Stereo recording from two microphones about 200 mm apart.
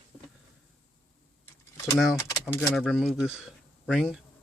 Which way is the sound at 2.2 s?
15° left (ahead or behind).